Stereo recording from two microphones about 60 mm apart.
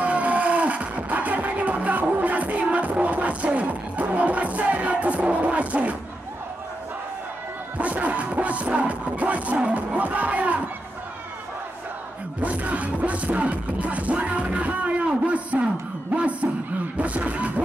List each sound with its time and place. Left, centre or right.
0.0 s music: right
7.7 s music: right
12.4 s music: right
16.1 s a sound: right
17.0 s beatboxing: right